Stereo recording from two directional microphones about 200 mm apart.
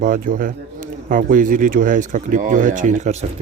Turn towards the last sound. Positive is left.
turn(degrees=-35)  # may be behind; listen again after turning